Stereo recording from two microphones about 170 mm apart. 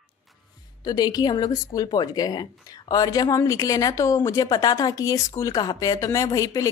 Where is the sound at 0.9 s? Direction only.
25° left (ahead or behind).